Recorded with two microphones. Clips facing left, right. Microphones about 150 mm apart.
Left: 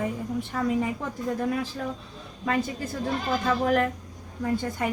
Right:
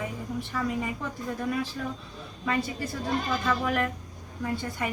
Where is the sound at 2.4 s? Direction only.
40° left (ahead or behind).